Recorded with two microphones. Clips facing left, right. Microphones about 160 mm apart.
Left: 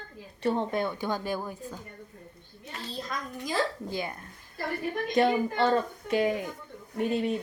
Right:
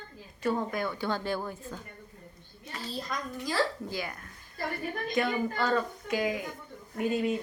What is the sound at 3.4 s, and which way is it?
Speech, 20° left (ahead or behind).